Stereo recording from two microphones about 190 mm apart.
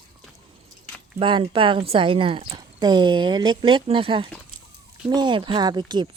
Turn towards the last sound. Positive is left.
turn(degrees=-25)  # may be behind; listen again after turning